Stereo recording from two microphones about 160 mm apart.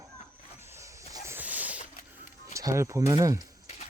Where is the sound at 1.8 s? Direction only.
55° left (ahead or behind).